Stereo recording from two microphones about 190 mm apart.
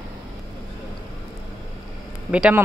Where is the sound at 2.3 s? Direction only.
5° right (ahead or behind).